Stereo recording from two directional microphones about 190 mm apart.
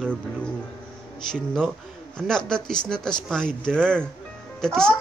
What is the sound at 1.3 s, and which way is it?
A child's voice, 5° left (ahead or behind).